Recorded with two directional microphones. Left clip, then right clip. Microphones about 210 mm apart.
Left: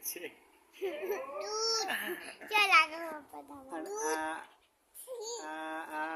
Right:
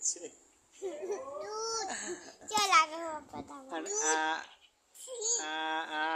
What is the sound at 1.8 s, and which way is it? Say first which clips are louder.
Laughter: left 3 dB; 5° left (ahead or behind).